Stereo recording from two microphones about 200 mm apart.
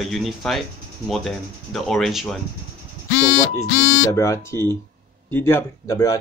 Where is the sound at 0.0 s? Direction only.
Centre (ahead or behind).